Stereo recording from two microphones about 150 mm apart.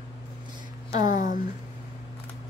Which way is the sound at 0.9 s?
55° left (ahead or behind).